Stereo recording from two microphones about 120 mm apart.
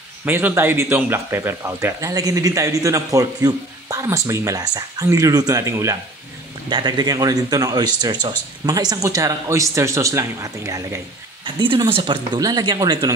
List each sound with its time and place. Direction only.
0.2 s speech: 15° right (ahead or behind)
6.7 s speech: 35° right (ahead or behind)
11.4 s speech: 40° right (ahead or behind)